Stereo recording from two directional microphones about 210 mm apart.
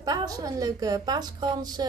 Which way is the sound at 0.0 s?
20° right (ahead or behind).